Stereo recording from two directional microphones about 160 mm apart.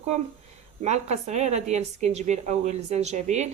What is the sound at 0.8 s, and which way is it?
A woman's voice, 45° right (ahead or behind).